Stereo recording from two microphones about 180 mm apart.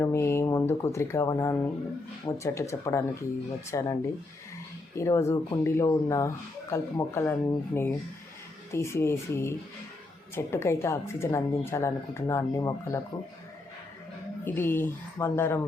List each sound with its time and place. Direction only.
0.0 s speech: 15° left (ahead or behind)
4.9 s speech: 15° left (ahead or behind)
14.4 s speech: 10° left (ahead or behind)